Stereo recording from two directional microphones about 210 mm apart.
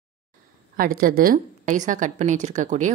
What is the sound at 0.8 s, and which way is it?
A woman's voice, 45° right (ahead or behind).